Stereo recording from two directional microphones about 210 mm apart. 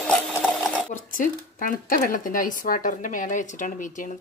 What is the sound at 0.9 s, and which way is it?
Speech, 40° left (ahead or behind).